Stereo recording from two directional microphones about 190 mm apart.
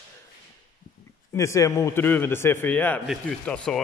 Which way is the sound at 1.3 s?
15° left (ahead or behind).